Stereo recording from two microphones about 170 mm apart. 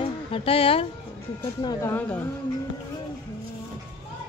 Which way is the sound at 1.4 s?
25° left (ahead or behind).